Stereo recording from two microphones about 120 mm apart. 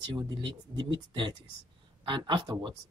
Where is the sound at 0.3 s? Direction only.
40° right (ahead or behind).